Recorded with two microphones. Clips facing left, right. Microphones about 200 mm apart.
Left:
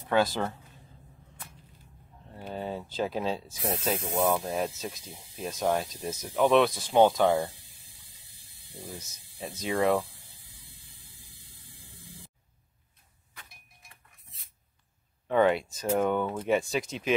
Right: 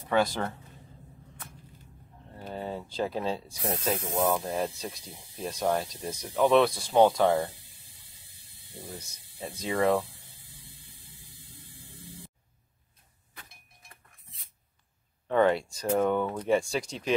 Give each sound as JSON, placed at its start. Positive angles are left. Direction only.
{"t": 0.1, "sound": "speech", "side_deg": 0}
{"t": 2.3, "sound": "a sound", "side_deg": 0}
{"t": 3.4, "sound": "speech", "side_deg": 5}
{"t": 8.8, "sound": "speech", "side_deg": 0}
{"t": 15.2, "sound": "speech", "side_deg": 5}
{"t": 15.5, "sound": "speech", "side_deg": 20}
{"t": 15.8, "sound": "speech", "side_deg": 0}